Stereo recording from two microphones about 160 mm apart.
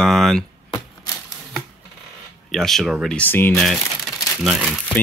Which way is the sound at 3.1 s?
10° left (ahead or behind).